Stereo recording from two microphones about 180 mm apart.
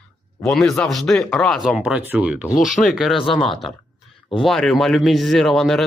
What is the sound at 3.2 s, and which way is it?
Speech, 30° left (ahead or behind).